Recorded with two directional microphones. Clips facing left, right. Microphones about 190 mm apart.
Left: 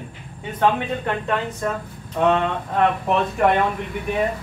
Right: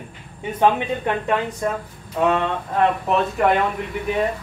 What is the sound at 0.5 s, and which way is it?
Speech, 15° right (ahead or behind).